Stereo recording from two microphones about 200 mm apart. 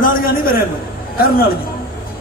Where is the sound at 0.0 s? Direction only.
45° left (ahead or behind).